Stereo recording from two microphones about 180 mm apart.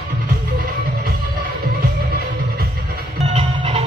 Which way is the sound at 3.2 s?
30° right (ahead or behind).